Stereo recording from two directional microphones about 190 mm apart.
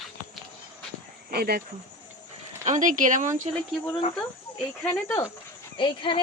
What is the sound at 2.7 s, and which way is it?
Speech, 45° right (ahead or behind).